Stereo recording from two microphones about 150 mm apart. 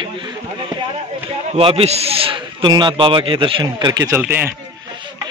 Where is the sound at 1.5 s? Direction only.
40° right (ahead or behind).